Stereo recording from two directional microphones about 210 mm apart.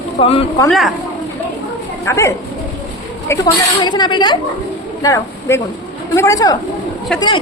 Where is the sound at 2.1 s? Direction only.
15° left (ahead or behind).